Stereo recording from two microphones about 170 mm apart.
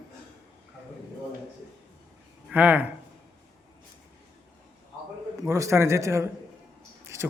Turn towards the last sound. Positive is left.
turn(degrees=-15)  # may be behind; listen again after turning